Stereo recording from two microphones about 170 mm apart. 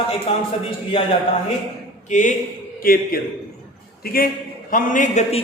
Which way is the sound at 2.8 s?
60° left (ahead or behind).